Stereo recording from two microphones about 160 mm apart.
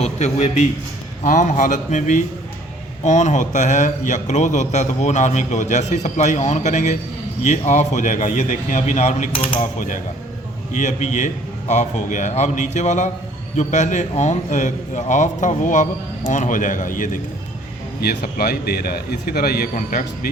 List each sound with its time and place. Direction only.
0.0 s a man's voice: 45° left (ahead or behind)
10.8 s a man's voice: 50° left (ahead or behind)
18.0 s a man's voice: 70° left (ahead or behind)
19.7 s speech: 60° left (ahead or behind)